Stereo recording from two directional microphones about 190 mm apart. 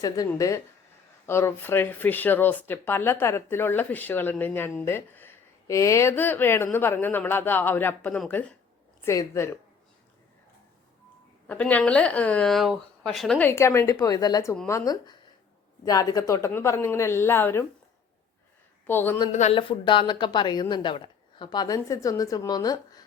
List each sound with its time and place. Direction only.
0.0 s speech: 20° left (ahead or behind)
11.4 s speech: 10° left (ahead or behind)
18.9 s speech: 10° left (ahead or behind)
19.3 s a woman's voice: 35° left (ahead or behind); by 23.0 s 20° left (ahead or behind)